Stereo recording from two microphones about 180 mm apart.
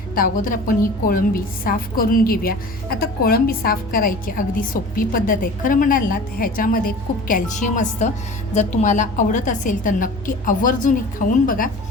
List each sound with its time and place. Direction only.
0.1 s a woman's voice: 50° left (ahead or behind)